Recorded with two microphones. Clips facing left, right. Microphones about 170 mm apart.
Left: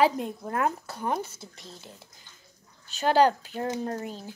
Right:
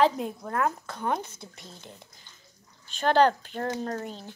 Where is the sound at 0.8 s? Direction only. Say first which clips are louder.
Even; 5° left (ahead or behind).